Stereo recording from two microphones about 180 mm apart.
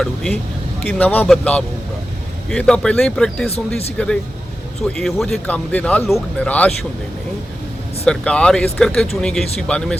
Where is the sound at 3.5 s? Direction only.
35° left (ahead or behind).